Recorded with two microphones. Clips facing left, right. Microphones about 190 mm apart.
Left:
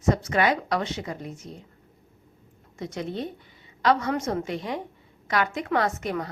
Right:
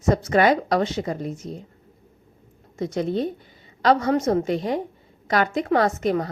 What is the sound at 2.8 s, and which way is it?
A woman's voice, 40° right (ahead or behind).